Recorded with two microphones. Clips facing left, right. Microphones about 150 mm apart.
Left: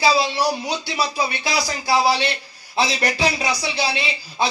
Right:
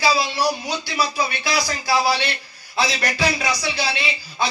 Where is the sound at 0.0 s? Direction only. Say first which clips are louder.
Left 1 dB; 25° left (ahead or behind).